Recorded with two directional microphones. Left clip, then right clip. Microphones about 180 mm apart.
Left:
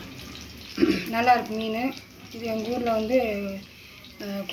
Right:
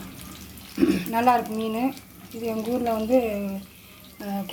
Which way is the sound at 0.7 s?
55° right (ahead or behind).